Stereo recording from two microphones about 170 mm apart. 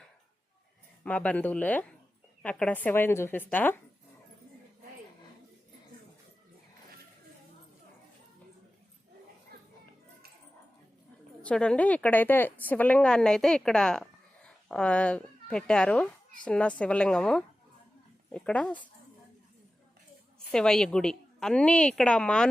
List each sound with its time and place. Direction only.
1.0 s speech: 10° left (ahead or behind)
9.5 s children playing: 65° right (ahead or behind)
11.4 s a woman's voice: 5° left (ahead or behind)
20.5 s a woman's voice: 5° left (ahead or behind)